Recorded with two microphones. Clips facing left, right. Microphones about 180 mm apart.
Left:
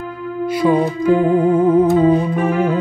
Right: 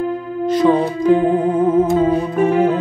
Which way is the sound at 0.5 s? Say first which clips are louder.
Right 1 dB; 10° left (ahead or behind).